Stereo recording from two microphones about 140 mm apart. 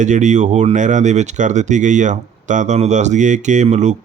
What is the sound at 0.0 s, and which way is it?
Speech, 60° right (ahead or behind).